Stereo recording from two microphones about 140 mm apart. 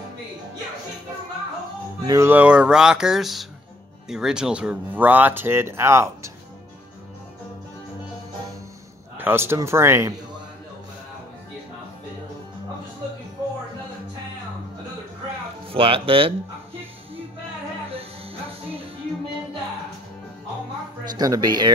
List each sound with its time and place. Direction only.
2.0 s speech: 20° right (ahead or behind)
9.2 s speech: 15° right (ahead or behind)
15.7 s speech: 40° right (ahead or behind)
21.2 s speech: 25° right (ahead or behind)